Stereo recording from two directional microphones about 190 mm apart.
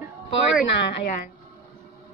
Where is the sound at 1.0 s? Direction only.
45° left (ahead or behind).